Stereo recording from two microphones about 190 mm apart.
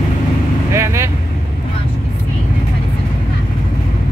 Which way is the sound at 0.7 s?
15° right (ahead or behind).